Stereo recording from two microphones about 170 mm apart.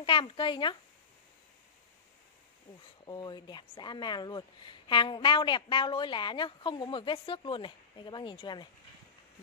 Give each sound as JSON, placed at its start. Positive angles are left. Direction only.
{"t": 0.0, "sound": "a woman's voice", "side_deg": 30}
{"t": 3.1, "sound": "a woman's voice", "side_deg": 25}